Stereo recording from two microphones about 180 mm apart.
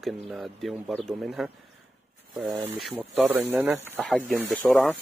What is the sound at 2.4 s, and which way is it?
Speech, 20° right (ahead or behind).